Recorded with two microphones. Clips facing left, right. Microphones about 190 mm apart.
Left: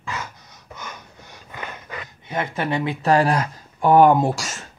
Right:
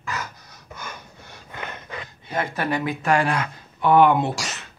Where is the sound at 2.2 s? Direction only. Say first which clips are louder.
Left 1 dB; 20° left (ahead or behind); by 4.7 s 45° left (ahead or behind).